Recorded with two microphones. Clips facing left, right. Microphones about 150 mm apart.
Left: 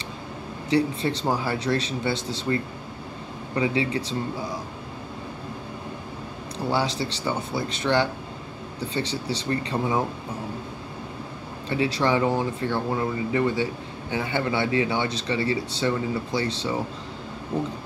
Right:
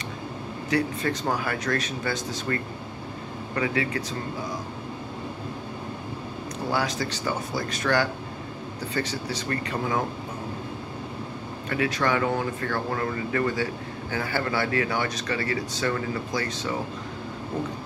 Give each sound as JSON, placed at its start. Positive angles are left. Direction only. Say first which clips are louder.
{"t": 0.7, "sound": "speech", "louder": "left 3 dB", "side_deg": 30}
{"t": 3.5, "sound": "speech", "louder": "left 3 dB", "side_deg": 20}
{"t": 6.7, "sound": "speech", "louder": "left 2 dB", "side_deg": 25}
{"t": 11.7, "sound": "speech", "louder": "left 2 dB", "side_deg": 25}